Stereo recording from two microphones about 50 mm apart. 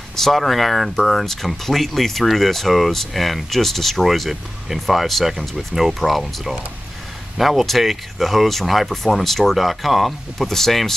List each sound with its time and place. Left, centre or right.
0.1 s speech: centre